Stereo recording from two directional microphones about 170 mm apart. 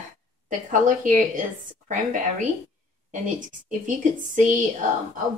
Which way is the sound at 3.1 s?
50° right (ahead or behind).